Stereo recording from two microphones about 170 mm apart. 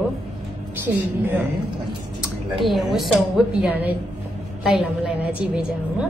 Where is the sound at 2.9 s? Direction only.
5° right (ahead or behind).